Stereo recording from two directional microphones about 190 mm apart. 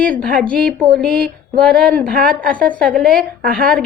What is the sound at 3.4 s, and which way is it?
Speech, 50° right (ahead or behind).